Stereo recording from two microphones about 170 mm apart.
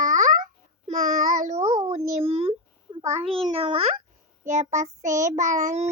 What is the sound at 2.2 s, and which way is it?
A child's voice, 35° right (ahead or behind).